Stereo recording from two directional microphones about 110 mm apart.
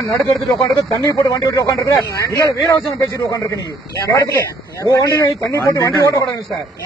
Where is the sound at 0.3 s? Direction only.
30° left (ahead or behind).